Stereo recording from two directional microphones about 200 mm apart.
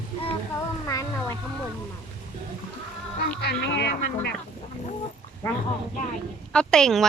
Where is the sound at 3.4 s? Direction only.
55° left (ahead or behind).